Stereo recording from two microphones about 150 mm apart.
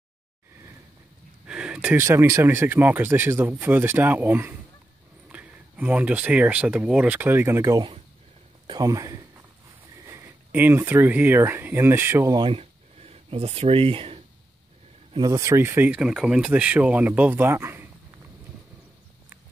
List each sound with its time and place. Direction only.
1.5 s speech: 5° right (ahead or behind)
12.4 s a sound: 40° right (ahead or behind)
15.1 s speech: 25° right (ahead or behind)